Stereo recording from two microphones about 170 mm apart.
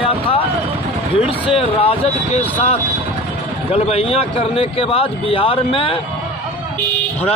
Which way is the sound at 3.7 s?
35° left (ahead or behind).